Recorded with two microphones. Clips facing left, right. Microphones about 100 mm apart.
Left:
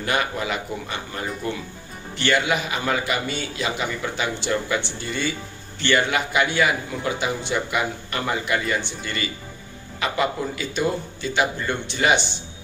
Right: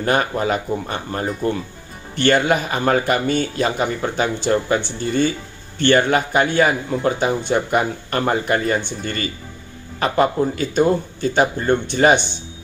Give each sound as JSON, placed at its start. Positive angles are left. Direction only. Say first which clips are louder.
{"t": 0.0, "sound": "speech", "louder": "right 5 dB", "side_deg": -40}